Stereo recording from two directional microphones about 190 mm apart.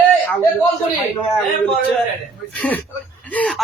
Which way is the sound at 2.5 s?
5° left (ahead or behind).